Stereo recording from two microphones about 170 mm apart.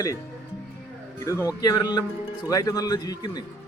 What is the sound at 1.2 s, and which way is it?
A man's voice, 20° left (ahead or behind).